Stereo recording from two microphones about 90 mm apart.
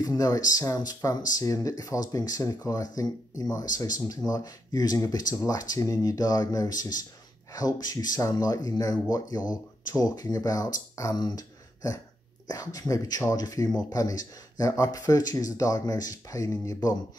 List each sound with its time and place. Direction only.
0.0 s speech: 45° left (ahead or behind)